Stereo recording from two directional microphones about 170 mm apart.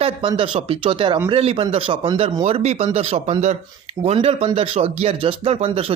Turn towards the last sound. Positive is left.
turn(degrees=-35)  # may be behind; listen again after turning